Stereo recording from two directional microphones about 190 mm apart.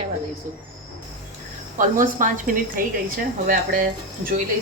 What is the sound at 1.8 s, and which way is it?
A woman's voice, 45° right (ahead or behind).